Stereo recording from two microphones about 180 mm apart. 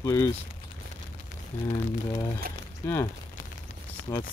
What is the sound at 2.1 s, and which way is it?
Speech, 20° left (ahead or behind).